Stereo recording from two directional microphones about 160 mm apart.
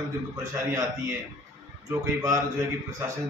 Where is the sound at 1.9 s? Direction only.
20° right (ahead or behind).